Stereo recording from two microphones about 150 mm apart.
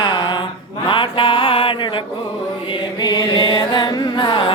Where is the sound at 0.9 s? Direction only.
35° left (ahead or behind).